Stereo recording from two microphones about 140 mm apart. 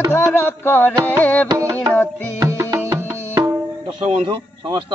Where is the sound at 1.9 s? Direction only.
10° left (ahead or behind).